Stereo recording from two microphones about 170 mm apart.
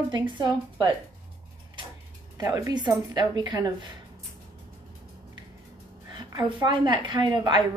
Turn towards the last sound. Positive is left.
turn(degrees=-25)  # may be behind; listen again after turning